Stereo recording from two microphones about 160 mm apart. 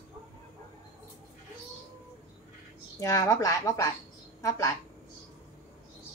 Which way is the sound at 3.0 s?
20° left (ahead or behind).